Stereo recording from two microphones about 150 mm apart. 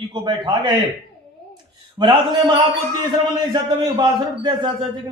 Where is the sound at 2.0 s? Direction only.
25° right (ahead or behind).